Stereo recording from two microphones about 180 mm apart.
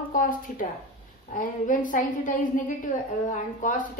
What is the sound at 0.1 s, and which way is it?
A woman's voice, 50° left (ahead or behind).